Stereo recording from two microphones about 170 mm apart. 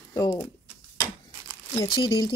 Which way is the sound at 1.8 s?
25° left (ahead or behind).